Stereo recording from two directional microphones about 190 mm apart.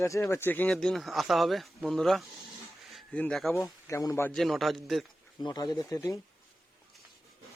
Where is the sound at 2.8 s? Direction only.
Centre (ahead or behind).